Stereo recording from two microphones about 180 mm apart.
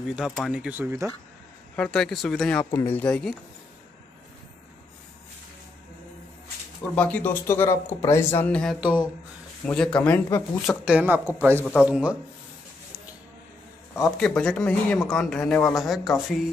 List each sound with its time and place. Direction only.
0.1 s speech: 5° right (ahead or behind)
1.8 s speech: centre (ahead or behind)
6.8 s speech: 10° left (ahead or behind)
10.7 s speech: 5° right (ahead or behind)
11.6 s speech: 5° right (ahead or behind)
14.1 s speech: 5° left (ahead or behind)